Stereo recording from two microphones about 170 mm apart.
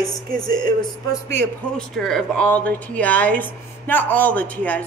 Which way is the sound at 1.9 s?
Centre (ahead or behind).